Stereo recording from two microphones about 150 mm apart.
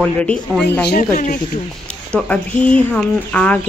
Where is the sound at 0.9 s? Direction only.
55° left (ahead or behind).